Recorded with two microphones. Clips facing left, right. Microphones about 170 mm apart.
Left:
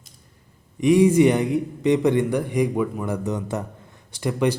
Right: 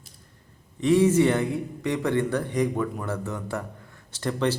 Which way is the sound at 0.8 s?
15° left (ahead or behind).